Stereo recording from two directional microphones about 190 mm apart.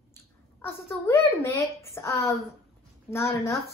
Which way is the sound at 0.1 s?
10° left (ahead or behind).